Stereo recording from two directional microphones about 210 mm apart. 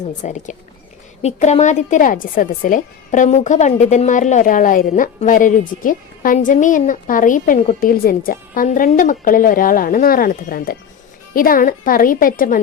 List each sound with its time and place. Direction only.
0.0 s speech: 35° left (ahead or behind)